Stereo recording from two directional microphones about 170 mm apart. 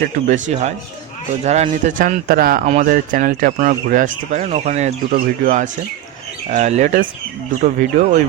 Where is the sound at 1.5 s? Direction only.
40° right (ahead or behind).